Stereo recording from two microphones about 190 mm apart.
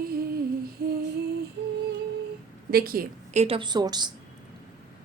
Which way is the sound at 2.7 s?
50° right (ahead or behind).